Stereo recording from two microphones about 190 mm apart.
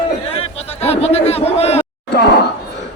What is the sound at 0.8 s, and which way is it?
Speech, 35° left (ahead or behind).